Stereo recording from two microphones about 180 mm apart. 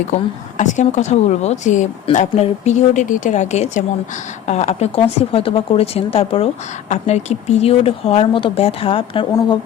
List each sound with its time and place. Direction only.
0.1 s a woman's voice: 45° left (ahead or behind); by 9.6 s 25° left (ahead or behind)